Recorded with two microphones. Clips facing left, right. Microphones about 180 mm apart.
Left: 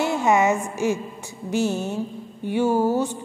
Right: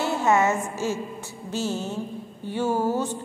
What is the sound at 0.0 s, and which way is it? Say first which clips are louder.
A woman's voice: left 2 dB; 15° left (ahead or behind).